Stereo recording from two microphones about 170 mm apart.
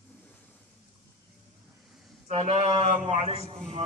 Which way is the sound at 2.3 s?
35° right (ahead or behind).